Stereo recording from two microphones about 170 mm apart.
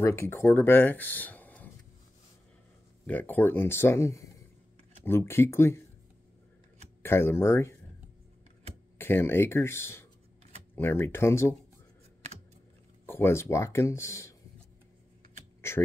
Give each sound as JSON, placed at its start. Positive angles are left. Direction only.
{"t": 0.0, "sound": "speech", "side_deg": 15}
{"t": 3.1, "sound": "speech", "side_deg": 10}
{"t": 7.0, "sound": "speech", "side_deg": 15}
{"t": 8.9, "sound": "speech", "side_deg": 15}
{"t": 13.0, "sound": "speech", "side_deg": 15}
{"t": 15.7, "sound": "speech", "side_deg": 15}